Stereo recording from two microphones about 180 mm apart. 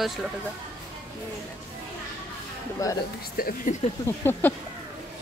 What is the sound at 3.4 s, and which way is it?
Speech, 50° left (ahead or behind).